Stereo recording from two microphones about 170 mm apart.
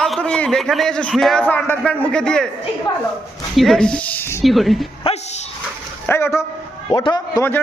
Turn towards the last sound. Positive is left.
turn(degrees=20)  # may be behind; listen again after turning